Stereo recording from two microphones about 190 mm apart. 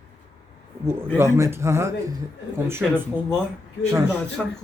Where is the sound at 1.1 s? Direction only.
15° right (ahead or behind).